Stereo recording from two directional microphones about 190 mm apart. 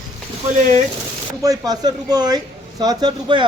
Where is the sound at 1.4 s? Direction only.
20° right (ahead or behind).